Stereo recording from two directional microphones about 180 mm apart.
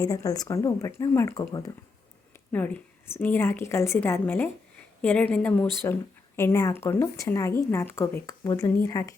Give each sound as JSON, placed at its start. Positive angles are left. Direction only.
{"t": 0.0, "sound": "a woman's voice", "side_deg": 20}
{"t": 2.5, "sound": "a woman's voice", "side_deg": 10}